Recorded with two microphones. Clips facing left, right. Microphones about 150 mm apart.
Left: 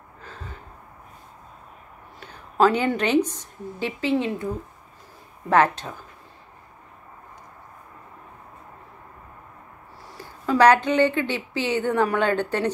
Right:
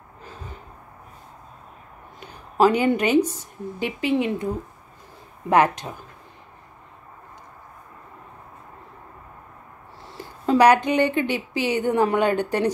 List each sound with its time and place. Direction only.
2.1 s a woman's voice: 10° right (ahead or behind)
10.0 s a sound: 25° right (ahead or behind)
10.6 s a woman's voice: 15° right (ahead or behind)